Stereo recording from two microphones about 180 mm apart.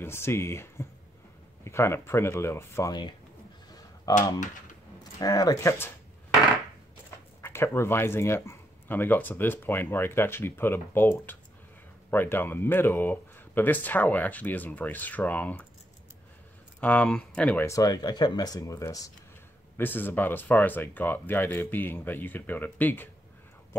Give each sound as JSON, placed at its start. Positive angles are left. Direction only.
{"t": 0.0, "sound": "speech", "side_deg": 15}
{"t": 7.4, "sound": "speech", "side_deg": 15}
{"t": 16.8, "sound": "speech", "side_deg": 5}